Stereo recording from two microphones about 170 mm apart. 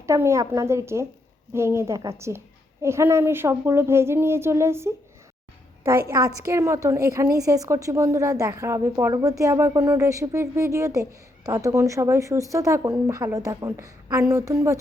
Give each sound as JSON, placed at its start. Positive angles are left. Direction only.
{"t": 0.0, "sound": "a woman's voice", "side_deg": -15}